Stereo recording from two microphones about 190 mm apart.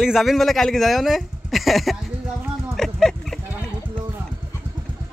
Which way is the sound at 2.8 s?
Centre (ahead or behind).